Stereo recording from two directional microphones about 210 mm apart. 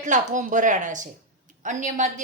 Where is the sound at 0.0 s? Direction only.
35° right (ahead or behind).